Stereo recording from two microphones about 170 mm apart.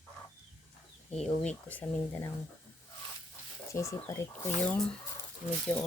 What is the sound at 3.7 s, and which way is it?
Dishes, 15° left (ahead or behind).